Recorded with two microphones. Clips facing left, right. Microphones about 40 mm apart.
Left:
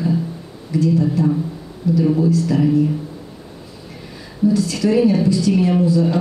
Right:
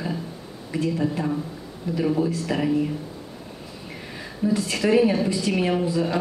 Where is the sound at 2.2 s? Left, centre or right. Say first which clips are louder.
Left 7 dB; right.